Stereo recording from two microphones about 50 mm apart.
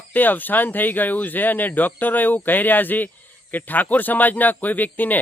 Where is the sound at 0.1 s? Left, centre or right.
Left.